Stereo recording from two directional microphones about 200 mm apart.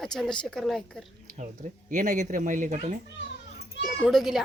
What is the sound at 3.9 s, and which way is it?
Speech, centre (ahead or behind).